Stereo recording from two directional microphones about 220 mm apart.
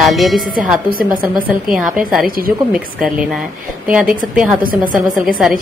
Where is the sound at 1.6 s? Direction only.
Centre (ahead or behind).